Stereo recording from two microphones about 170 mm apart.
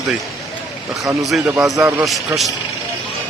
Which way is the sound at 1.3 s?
Centre (ahead or behind).